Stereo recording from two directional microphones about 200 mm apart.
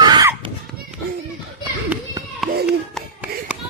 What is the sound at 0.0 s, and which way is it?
Children playing, 20° right (ahead or behind).